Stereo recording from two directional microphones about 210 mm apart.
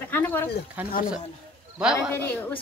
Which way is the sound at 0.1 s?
10° left (ahead or behind).